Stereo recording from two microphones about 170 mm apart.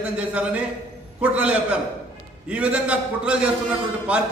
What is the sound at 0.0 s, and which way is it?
A man's voice, 5° right (ahead or behind).